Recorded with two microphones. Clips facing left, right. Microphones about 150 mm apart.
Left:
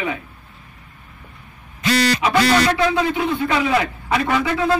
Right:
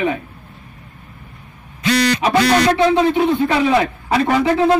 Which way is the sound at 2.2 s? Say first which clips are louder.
Right 3 dB; 30° right (ahead or behind).